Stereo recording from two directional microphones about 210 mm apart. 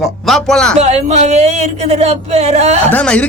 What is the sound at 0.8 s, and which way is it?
Speech, 30° right (ahead or behind).